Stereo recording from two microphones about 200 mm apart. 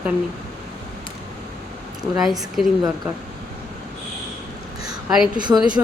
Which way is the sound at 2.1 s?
Centre (ahead or behind).